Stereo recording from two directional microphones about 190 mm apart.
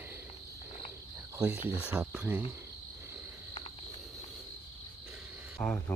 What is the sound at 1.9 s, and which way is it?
Cricket, 10° right (ahead or behind).